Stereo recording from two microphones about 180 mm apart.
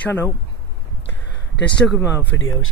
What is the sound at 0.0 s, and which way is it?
Speech, 10° left (ahead or behind).